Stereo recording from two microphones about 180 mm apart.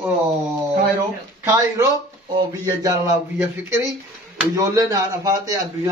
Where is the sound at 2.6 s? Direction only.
20° right (ahead or behind).